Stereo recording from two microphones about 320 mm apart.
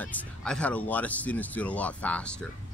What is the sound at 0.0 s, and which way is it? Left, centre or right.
Speech, centre.